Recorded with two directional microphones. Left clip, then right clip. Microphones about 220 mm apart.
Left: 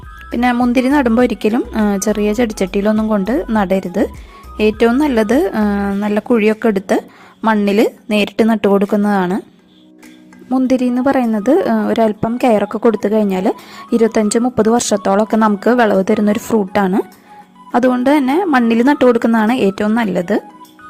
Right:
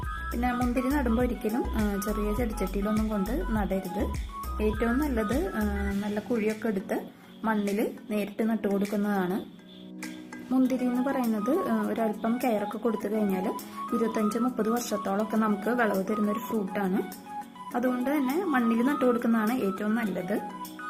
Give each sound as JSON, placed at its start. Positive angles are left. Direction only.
{"t": 0.3, "sound": "a woman's voice", "side_deg": 45}
{"t": 10.5, "sound": "a woman's voice", "side_deg": 35}